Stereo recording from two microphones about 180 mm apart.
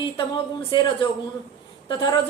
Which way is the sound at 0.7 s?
25° left (ahead or behind).